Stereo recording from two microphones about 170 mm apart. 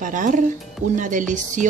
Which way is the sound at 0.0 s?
50° right (ahead or behind).